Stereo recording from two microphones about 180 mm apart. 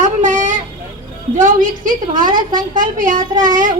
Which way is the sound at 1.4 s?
50° right (ahead or behind).